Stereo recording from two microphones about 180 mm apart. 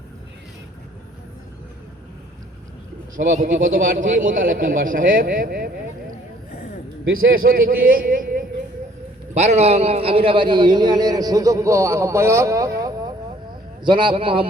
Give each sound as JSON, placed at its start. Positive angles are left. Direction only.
{"t": 3.2, "sound": "a man's voice", "side_deg": -45}
{"t": 7.2, "sound": "a man's voice", "side_deg": -55}